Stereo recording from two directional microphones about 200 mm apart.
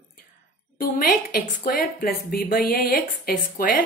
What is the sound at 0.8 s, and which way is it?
A woman's voice, 45° left (ahead or behind).